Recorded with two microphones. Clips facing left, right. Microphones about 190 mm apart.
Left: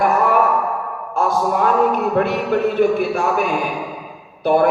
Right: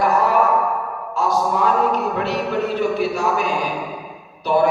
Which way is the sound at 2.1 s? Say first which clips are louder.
Left 4 dB; 50° left (ahead or behind).